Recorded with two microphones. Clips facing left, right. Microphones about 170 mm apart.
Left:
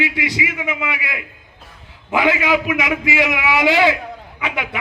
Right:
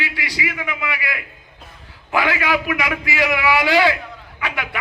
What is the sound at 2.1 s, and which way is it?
A man's voice, 20° left (ahead or behind).